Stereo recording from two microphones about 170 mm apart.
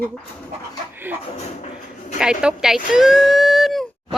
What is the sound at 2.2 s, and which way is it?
Speech, 5° right (ahead or behind).